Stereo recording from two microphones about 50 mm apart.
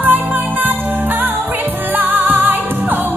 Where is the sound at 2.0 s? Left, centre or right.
Right.